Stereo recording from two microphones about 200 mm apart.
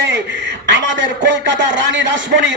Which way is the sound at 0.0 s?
60° right (ahead or behind).